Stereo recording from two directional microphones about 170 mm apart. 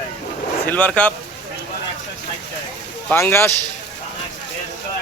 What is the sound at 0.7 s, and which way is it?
Speech, 10° left (ahead or behind).